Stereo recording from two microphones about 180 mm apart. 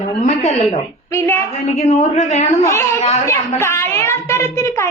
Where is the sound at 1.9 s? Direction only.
40° left (ahead or behind).